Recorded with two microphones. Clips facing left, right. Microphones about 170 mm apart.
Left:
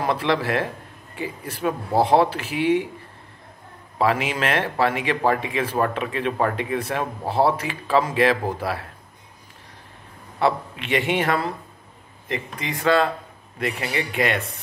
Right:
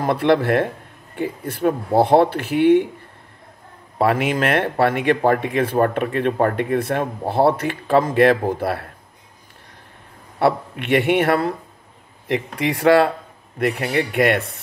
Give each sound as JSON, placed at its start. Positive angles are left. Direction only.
{"t": 0.0, "sound": "speech", "side_deg": -55}
{"t": 4.0, "sound": "speech", "side_deg": -55}
{"t": 10.4, "sound": "speech", "side_deg": -60}
{"t": 12.3, "sound": "speech", "side_deg": -75}
{"t": 13.6, "sound": "speech", "side_deg": -55}